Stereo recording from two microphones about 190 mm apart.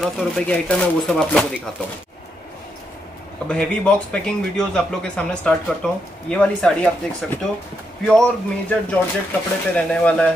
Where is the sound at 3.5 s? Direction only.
5° left (ahead or behind).